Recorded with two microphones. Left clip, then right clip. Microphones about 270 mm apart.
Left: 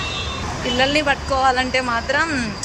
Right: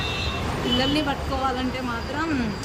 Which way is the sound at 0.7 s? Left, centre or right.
Centre.